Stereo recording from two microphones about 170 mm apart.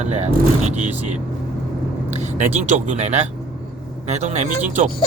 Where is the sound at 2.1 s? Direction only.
45° right (ahead or behind).